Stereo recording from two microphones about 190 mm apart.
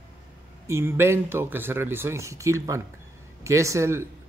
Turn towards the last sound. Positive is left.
turn(degrees=-15)  # may be behind; listen again after turning